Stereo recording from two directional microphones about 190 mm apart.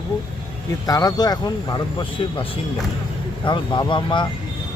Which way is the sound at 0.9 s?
20° left (ahead or behind).